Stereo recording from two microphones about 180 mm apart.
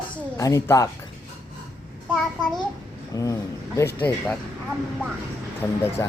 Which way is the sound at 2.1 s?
Centre (ahead or behind).